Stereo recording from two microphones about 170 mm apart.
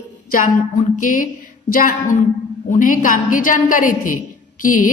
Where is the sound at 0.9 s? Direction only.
50° left (ahead or behind).